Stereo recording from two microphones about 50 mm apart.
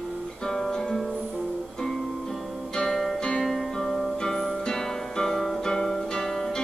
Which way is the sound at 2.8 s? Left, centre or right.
Centre.